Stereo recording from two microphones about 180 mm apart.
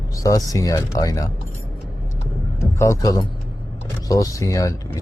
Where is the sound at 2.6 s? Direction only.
15° left (ahead or behind).